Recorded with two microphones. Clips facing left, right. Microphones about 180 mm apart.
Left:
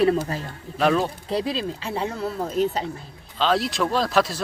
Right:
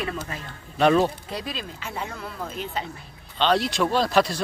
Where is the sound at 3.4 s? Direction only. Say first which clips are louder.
Even; centre (ahead or behind).